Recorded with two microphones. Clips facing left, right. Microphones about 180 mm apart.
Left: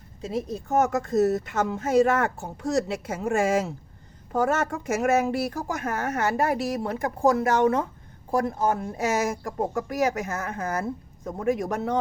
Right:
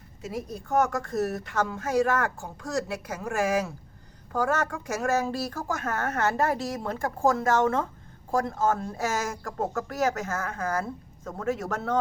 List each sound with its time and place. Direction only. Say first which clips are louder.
0.2 s a woman's voice: left 5 dB; 25° left (ahead or behind)